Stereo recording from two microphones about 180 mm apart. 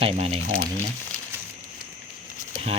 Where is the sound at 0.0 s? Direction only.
35° right (ahead or behind).